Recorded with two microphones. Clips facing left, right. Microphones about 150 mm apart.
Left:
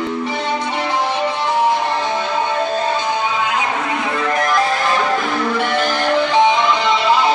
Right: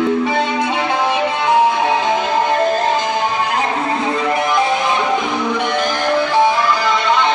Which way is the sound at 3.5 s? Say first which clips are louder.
Right 2 dB; 35° right (ahead or behind).